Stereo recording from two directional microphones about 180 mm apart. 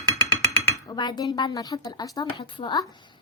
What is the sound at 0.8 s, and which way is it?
A woman's voice, 20° left (ahead or behind).